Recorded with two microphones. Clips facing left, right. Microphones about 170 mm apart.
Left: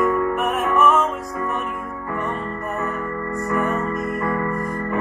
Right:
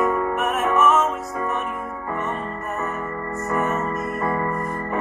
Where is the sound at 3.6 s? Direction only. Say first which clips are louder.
Left 1 dB; 20° right (ahead or behind).